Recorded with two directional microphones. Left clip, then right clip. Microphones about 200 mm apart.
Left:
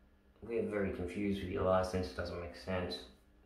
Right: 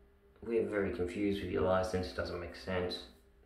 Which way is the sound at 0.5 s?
5° right (ahead or behind).